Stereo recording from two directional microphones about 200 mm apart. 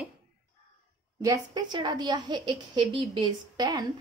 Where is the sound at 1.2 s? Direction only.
20° right (ahead or behind).